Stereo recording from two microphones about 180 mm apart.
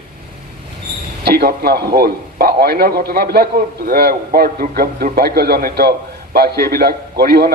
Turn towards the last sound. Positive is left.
turn(degrees=-60)  # may be behind; listen again after turning